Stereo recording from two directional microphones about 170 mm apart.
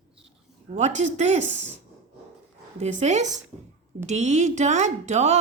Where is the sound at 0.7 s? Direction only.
45° right (ahead or behind).